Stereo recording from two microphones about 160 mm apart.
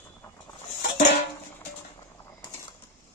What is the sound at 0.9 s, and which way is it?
Music, 40° left (ahead or behind).